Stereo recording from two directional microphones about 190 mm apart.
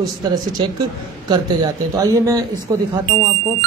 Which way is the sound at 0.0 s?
20° right (ahead or behind).